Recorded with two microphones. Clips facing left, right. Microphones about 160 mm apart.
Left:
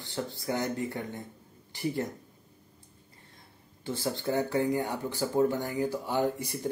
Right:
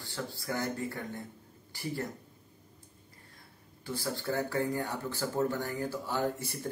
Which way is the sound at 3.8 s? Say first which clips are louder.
Left 3 dB; 20° left (ahead or behind).